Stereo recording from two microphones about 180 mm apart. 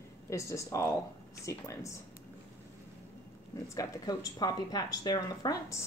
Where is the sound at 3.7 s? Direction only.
20° left (ahead or behind).